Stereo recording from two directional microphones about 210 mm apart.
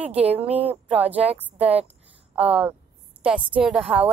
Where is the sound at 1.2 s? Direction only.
30° right (ahead or behind).